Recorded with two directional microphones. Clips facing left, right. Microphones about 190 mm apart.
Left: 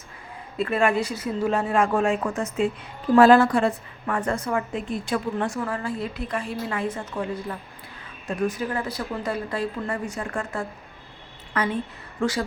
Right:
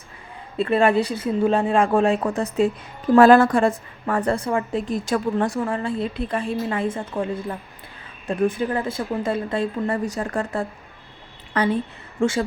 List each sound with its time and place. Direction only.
0.5 s a woman's voice: 30° right (ahead or behind)
3.2 s a woman's voice: 50° right (ahead or behind)
5.6 s a woman's voice: 30° right (ahead or behind)
8.6 s a woman's voice: 25° right (ahead or behind)